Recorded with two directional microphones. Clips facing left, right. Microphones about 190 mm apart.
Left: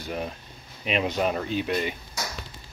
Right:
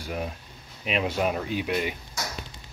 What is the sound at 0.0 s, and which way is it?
Speech, 5° right (ahead or behind).